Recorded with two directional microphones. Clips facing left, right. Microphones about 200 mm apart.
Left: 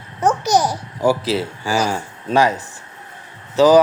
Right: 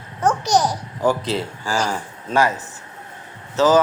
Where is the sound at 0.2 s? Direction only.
10° left (ahead or behind).